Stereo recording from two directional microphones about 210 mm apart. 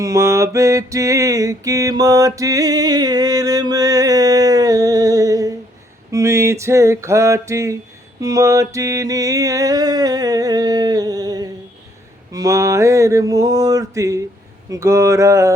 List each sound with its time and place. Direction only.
0.0 s mantra: 15° right (ahead or behind)
6.1 s a sound: 15° right (ahead or behind)
8.2 s mantra: 15° right (ahead or behind)